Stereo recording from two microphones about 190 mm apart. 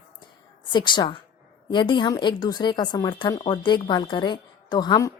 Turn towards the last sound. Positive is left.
turn(degrees=20)  # may be behind; listen again after turning